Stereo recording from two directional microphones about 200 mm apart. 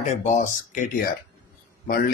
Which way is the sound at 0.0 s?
35° left (ahead or behind).